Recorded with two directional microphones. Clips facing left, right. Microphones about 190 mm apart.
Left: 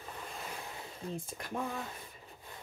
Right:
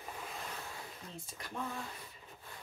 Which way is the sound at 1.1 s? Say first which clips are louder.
Left 8 dB; 50° left (ahead or behind).